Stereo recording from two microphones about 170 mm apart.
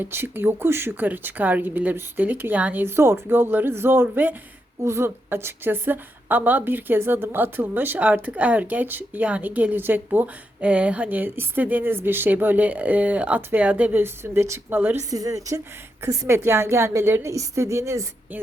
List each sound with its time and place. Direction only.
0.0 s a woman's voice: 15° right (ahead or behind)